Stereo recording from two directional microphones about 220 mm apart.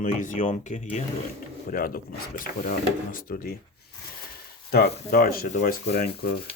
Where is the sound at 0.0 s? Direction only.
35° left (ahead or behind).